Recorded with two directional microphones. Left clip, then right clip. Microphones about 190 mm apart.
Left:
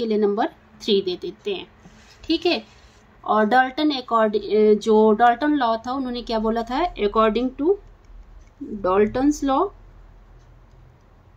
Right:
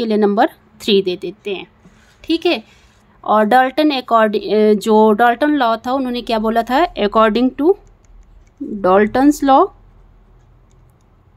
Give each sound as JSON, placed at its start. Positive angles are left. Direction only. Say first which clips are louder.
{"t": 0.0, "sound": "a woman's voice", "louder": "right 7 dB", "side_deg": -50}
{"t": 8.8, "sound": "speech", "louder": "right 7 dB", "side_deg": -55}